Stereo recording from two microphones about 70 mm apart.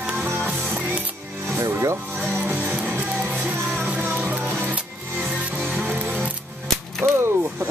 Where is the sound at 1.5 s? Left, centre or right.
Right.